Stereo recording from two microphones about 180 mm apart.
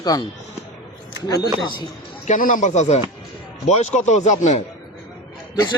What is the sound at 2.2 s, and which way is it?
Speech, 45° left (ahead or behind).